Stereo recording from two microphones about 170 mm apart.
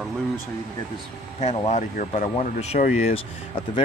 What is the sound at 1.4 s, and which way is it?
Speech, 40° left (ahead or behind).